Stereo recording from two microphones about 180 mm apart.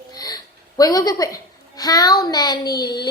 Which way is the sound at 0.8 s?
20° left (ahead or behind).